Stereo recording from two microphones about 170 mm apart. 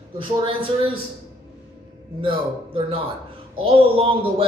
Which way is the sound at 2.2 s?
30° right (ahead or behind).